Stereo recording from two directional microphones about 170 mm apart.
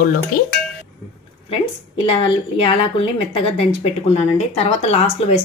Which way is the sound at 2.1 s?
35° left (ahead or behind).